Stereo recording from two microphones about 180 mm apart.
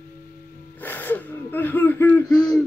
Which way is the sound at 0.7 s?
10° left (ahead or behind).